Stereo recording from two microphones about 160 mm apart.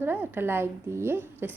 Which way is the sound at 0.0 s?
15° right (ahead or behind).